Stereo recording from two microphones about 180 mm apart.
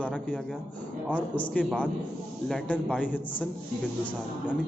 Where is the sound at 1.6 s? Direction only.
5° left (ahead or behind).